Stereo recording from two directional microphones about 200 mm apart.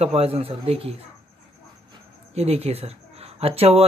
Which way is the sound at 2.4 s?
30° right (ahead or behind).